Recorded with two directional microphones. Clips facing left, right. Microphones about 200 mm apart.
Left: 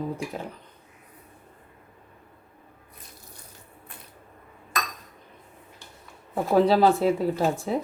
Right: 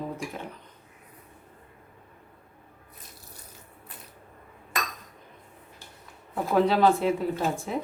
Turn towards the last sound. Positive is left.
turn(degrees=35)  # may be behind; listen again after turning